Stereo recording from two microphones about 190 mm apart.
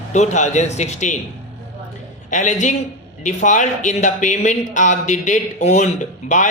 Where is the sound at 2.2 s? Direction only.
40° left (ahead or behind).